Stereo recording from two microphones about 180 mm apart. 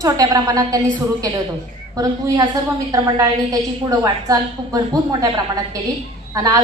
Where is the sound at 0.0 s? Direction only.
20° right (ahead or behind).